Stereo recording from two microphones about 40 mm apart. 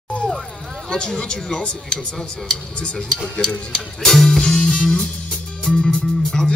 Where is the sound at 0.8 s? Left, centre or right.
Centre.